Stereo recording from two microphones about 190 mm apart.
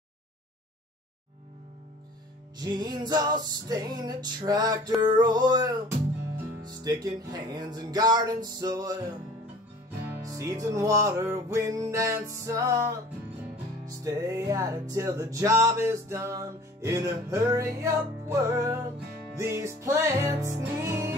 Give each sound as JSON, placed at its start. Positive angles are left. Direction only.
{"t": 2.6, "sound": "music", "side_deg": -20}
{"t": 13.8, "sound": "music", "side_deg": -15}